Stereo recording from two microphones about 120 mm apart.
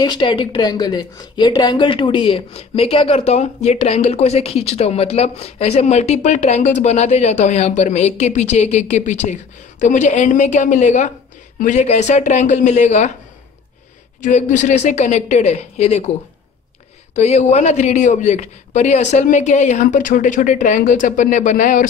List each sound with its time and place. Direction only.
0.0 s speech: 40° left (ahead or behind); by 11.1 s 85° left
11.6 s a woman's voice: 75° left (ahead or behind)
14.2 s a woman's voice: 85° left